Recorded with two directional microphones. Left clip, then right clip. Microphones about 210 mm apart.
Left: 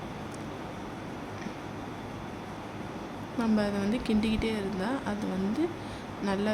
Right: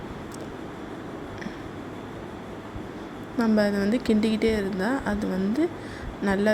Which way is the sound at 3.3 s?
20° right (ahead or behind).